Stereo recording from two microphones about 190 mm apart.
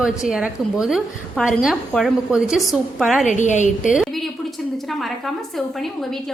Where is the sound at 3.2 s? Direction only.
40° left (ahead or behind).